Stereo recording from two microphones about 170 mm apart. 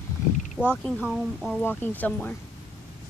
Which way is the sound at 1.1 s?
Centre (ahead or behind).